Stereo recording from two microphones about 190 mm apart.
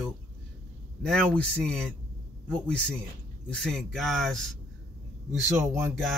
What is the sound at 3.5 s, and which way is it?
A man's voice, centre (ahead or behind).